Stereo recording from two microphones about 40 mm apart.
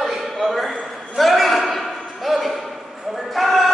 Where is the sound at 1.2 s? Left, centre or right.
Centre.